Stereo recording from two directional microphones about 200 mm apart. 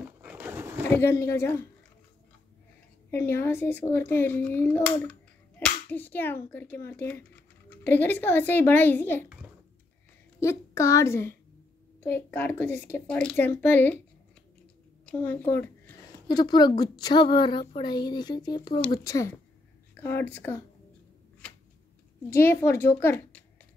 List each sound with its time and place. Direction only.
0.2 s a sound: 10° right (ahead or behind)
0.8 s speech: 10° left (ahead or behind)
3.1 s speech: 10° left (ahead or behind)
5.6 s a sound: 10° left (ahead or behind)
6.5 s speech: 10° left (ahead or behind)
10.4 s speech: 15° left (ahead or behind)
15.0 s speech: 10° left (ahead or behind)
16.3 s a woman's voice: 20° left (ahead or behind)
22.3 s speech: 10° left (ahead or behind)